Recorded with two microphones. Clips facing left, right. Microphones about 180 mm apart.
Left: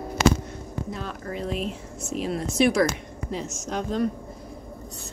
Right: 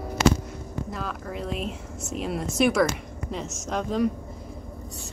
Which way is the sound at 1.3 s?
Centre (ahead or behind).